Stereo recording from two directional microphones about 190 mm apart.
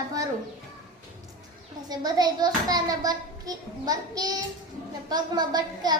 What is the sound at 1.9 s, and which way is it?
A child's voice, 20° right (ahead or behind).